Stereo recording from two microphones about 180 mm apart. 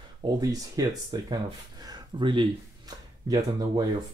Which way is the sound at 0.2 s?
20° right (ahead or behind).